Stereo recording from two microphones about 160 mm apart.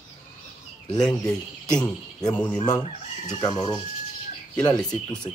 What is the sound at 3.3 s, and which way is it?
Speech, 25° left (ahead or behind).